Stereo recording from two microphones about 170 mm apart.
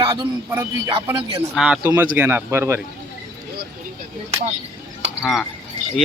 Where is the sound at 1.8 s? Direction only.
20° right (ahead or behind).